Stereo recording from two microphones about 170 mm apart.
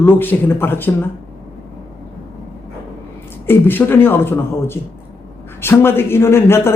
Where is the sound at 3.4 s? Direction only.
10° left (ahead or behind).